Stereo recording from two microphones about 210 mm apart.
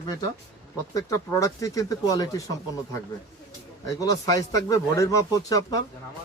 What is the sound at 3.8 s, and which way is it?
Speech, 15° left (ahead or behind).